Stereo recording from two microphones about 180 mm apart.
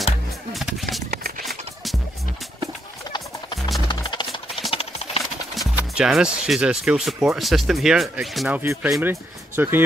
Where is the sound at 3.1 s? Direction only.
25° left (ahead or behind).